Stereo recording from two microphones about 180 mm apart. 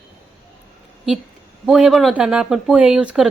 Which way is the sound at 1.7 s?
Centre (ahead or behind).